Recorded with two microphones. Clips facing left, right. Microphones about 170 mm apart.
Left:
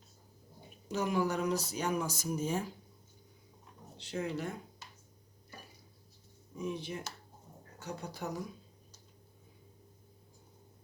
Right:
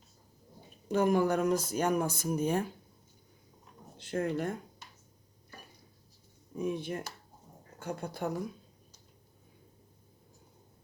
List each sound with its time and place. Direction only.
0.9 s speech: 50° right (ahead or behind)
3.9 s speech: 50° right (ahead or behind)
6.6 s speech: 55° right (ahead or behind)